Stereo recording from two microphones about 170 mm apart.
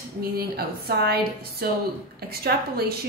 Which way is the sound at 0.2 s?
65° right (ahead or behind).